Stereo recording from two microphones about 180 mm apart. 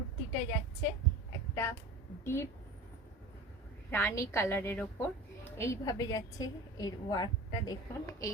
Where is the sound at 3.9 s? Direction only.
15° left (ahead or behind).